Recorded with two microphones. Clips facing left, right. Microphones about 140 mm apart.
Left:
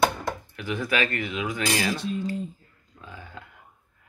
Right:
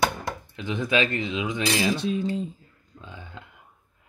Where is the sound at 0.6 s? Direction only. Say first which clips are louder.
Right 3 dB; 20° right (ahead or behind).